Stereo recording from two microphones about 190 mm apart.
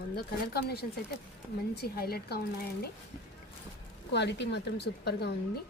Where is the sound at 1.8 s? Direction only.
55° left (ahead or behind).